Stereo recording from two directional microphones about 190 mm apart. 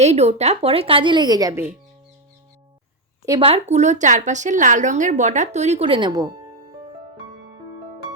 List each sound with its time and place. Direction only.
0.0 s a woman's voice: 35° right (ahead or behind); by 1.7 s 15° right (ahead or behind)
3.2 s speech: 25° right (ahead or behind)